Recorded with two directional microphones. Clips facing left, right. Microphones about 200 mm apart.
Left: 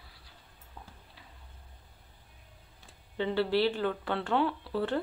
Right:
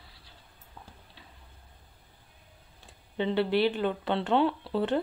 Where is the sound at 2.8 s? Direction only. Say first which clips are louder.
Right 2 dB; 20° right (ahead or behind).